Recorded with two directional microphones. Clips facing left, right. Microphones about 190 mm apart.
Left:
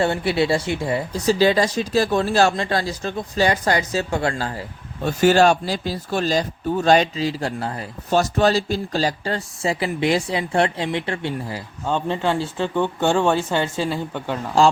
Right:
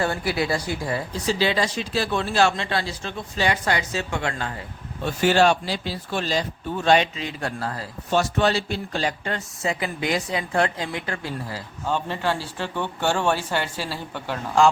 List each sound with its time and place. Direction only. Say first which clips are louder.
0.0 s speech: left 4 dB; 25° left (ahead or behind)
1.1 s speech: left 7 dB; 45° left (ahead or behind); by 7.9 s 25° left (ahead or behind)
8.1 s speech: left 3 dB; 40° left (ahead or behind); by 14.3 s 20° left (ahead or behind)